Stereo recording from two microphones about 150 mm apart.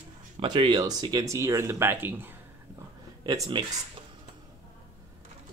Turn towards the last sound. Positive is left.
turn(degrees=-25)  # may be behind; listen again after turning